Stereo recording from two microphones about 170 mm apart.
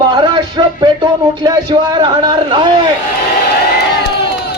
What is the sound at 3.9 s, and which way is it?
Crowd, 75° left (ahead or behind).